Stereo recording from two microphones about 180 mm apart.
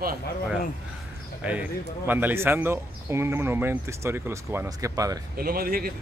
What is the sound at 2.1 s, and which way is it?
Speech, 10° right (ahead or behind).